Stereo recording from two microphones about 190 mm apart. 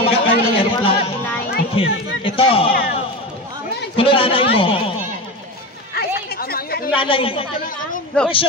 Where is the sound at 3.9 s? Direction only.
30° left (ahead or behind).